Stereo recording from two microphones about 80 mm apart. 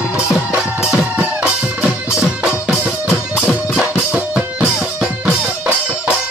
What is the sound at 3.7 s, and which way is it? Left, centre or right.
Music, centre.